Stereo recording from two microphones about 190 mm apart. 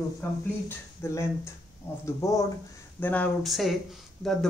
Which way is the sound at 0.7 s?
15° left (ahead or behind).